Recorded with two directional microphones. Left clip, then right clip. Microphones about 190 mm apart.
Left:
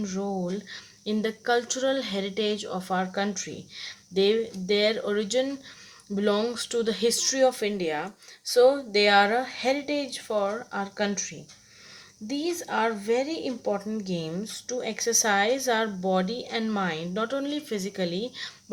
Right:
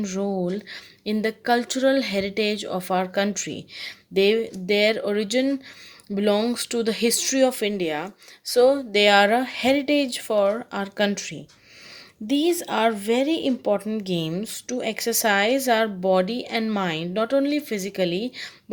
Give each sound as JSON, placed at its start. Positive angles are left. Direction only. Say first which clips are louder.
{"t": 0.0, "sound": "speech", "louder": "right 5 dB", "side_deg": -45}